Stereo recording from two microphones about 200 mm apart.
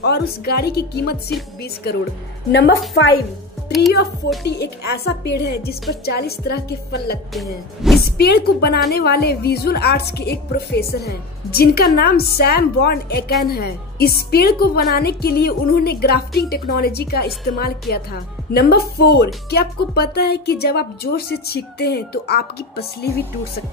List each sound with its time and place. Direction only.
0.0 s a woman's voice: 55° left (ahead or behind)
2.9 s a woman's voice: 90° left
4.4 s a woman's voice: 55° left (ahead or behind)
7.3 s music: centre (ahead or behind)
8.0 s a woman's voice: 55° left (ahead or behind)